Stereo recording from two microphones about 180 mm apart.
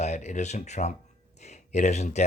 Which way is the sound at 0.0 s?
40° left (ahead or behind).